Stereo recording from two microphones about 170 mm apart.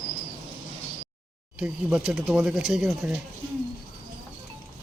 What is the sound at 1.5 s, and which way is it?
A woman's voice, 5° right (ahead or behind).